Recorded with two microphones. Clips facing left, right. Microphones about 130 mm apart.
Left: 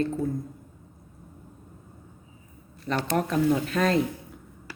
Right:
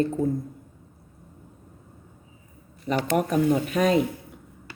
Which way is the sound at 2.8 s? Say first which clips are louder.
Right 3 dB; 10° right (ahead or behind).